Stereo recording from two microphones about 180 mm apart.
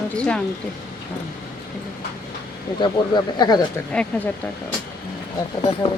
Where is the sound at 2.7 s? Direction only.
20° left (ahead or behind).